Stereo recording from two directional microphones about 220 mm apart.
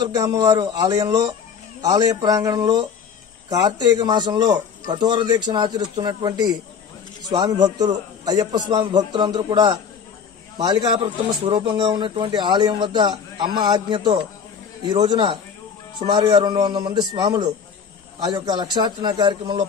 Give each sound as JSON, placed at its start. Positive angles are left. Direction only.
{"t": 0.1, "sound": "a man's voice", "side_deg": -15}